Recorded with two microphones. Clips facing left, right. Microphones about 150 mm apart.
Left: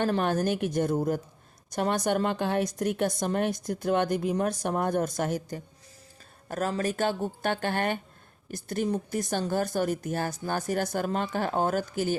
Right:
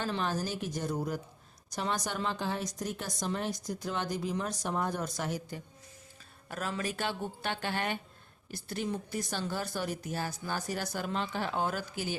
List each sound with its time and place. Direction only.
0.0 s speech: 55° left (ahead or behind)